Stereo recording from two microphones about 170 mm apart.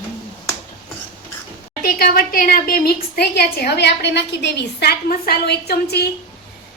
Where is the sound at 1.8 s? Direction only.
55° left (ahead or behind).